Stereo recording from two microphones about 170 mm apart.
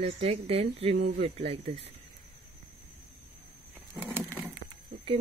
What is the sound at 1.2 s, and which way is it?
Speech, 35° right (ahead or behind).